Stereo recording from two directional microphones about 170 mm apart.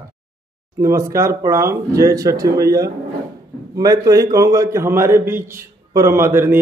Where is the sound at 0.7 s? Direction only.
15° right (ahead or behind).